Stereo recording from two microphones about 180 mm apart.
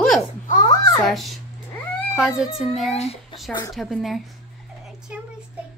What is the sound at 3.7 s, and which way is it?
Speech, centre (ahead or behind).